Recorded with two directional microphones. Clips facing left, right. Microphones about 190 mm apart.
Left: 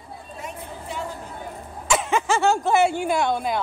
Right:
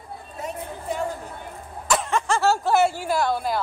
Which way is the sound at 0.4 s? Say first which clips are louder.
Right 4 dB; 45° right (ahead or behind).